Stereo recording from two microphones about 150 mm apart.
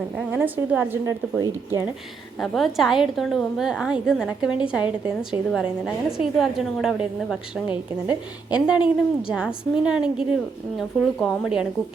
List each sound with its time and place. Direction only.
0.3 s a woman's voice: 15° right (ahead or behind)
2.4 s a woman's voice: centre (ahead or behind)